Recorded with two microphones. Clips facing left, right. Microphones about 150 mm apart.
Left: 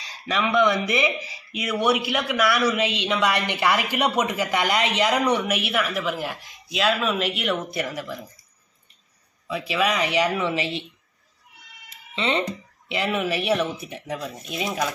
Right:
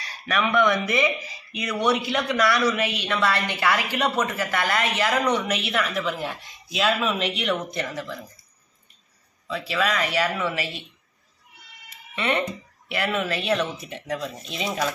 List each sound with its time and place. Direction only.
0.3 s speech: 15° left (ahead or behind)
9.5 s speech: 10° left (ahead or behind)
12.2 s speech: 20° left (ahead or behind)